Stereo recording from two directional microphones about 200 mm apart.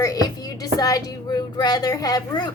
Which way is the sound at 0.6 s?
15° left (ahead or behind).